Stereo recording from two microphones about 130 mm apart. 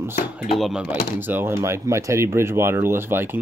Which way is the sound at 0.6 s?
5° right (ahead or behind).